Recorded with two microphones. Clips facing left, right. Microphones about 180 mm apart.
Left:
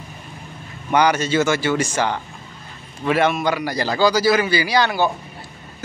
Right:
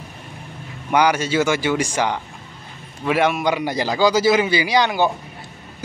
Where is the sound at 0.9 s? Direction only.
10° right (ahead or behind).